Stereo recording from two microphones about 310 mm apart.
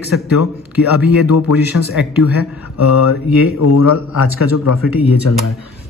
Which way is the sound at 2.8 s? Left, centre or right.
Left.